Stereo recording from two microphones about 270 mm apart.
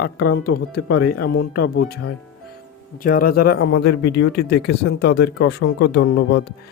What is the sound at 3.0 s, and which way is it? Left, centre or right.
Speech, left.